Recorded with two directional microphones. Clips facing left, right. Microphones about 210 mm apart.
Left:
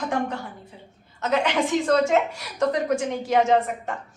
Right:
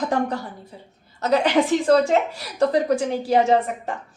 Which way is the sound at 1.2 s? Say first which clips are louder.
Right 4 dB; 35° right (ahead or behind).